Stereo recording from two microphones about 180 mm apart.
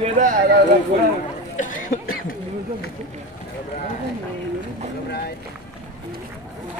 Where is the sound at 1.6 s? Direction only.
45° left (ahead or behind).